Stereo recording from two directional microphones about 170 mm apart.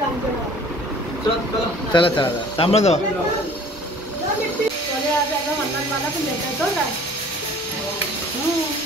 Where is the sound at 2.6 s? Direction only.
40° left (ahead or behind).